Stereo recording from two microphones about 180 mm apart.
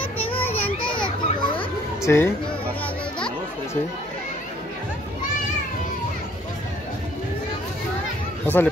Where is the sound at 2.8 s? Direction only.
5° left (ahead or behind).